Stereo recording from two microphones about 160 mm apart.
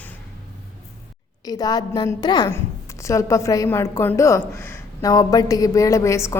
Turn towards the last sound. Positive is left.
turn(degrees=20)  # may be behind; listen again after turning